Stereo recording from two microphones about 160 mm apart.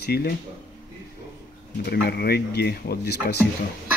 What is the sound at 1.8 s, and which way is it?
Speech, 85° left.